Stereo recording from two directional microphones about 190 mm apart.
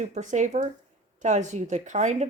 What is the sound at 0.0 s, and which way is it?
A woman's voice, 40° right (ahead or behind).